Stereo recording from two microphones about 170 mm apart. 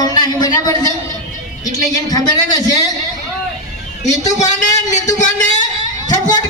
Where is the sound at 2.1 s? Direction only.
20° left (ahead or behind).